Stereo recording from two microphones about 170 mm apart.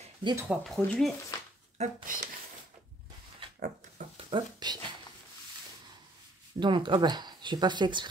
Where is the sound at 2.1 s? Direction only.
50° right (ahead or behind).